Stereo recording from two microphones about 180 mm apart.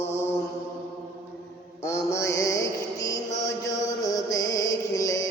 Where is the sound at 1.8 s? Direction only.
15° left (ahead or behind).